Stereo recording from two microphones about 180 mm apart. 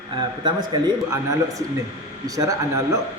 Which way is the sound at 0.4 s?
20° right (ahead or behind).